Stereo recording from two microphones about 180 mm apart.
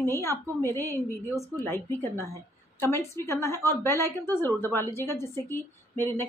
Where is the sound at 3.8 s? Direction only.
20° right (ahead or behind).